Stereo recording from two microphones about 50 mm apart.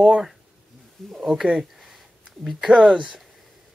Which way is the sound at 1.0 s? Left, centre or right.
Centre.